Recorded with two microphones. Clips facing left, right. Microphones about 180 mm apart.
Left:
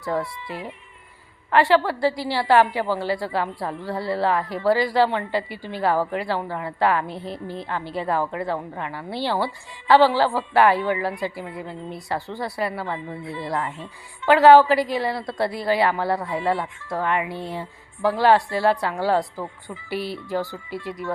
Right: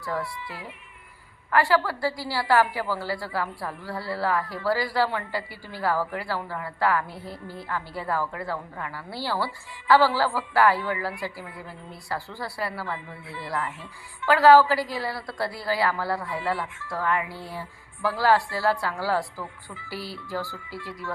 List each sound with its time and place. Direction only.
0.0 s a woman's voice: 20° left (ahead or behind)